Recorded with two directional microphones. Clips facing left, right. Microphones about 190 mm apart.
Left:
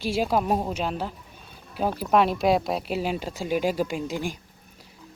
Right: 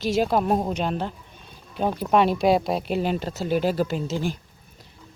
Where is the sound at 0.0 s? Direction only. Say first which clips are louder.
Right 2 dB; 10° left (ahead or behind).